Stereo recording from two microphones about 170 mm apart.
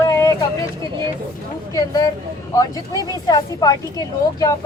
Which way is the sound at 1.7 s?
20° left (ahead or behind).